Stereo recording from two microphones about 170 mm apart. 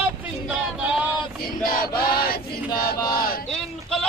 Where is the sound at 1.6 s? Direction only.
55° left (ahead or behind).